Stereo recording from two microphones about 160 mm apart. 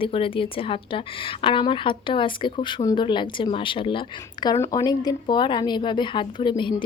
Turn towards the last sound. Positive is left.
turn(degrees=30)  # may be behind; listen again after turning